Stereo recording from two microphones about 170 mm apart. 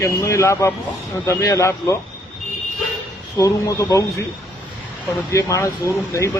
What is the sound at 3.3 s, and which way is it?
Speech, 20° left (ahead or behind).